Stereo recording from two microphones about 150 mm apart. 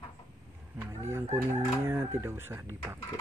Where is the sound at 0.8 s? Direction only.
15° right (ahead or behind).